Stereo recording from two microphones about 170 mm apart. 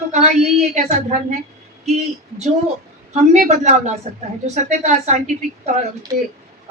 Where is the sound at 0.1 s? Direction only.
45° right (ahead or behind).